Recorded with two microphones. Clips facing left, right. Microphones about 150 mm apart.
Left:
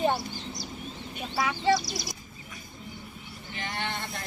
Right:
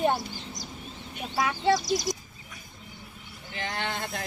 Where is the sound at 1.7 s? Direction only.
45° right (ahead or behind).